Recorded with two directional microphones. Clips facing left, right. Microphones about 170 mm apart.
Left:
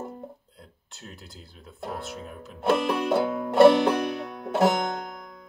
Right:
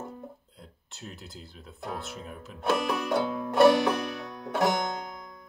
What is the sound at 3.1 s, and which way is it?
Music, 25° left (ahead or behind).